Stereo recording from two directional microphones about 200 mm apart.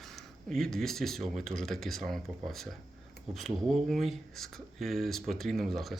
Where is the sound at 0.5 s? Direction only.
Centre (ahead or behind).